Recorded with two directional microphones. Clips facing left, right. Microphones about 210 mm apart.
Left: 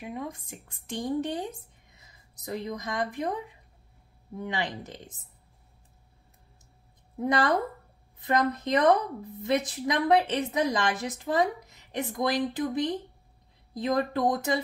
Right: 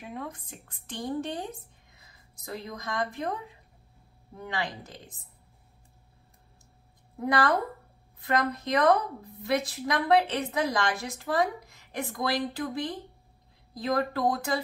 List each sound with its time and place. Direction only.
0.0 s a woman's voice: 15° left (ahead or behind)
4.4 s a woman's voice: 20° left (ahead or behind)
7.2 s a woman's voice: 20° left (ahead or behind)